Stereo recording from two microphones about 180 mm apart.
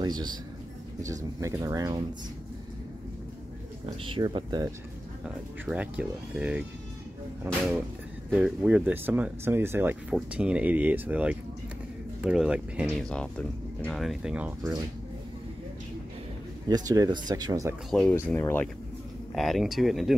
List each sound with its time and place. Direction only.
0.0 s speech: 25° right (ahead or behind)
4.0 s speech: 25° right (ahead or behind)
5.2 s speech: 5° right (ahead or behind)
13.1 s speech: 5° left (ahead or behind)
16.6 s speech: 20° right (ahead or behind)
17.8 s speech: 5° left (ahead or behind)
19.3 s speech: centre (ahead or behind)